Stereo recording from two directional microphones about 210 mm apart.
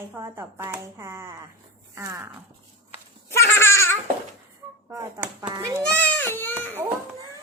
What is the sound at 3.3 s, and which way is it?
Babbling, 10° left (ahead or behind).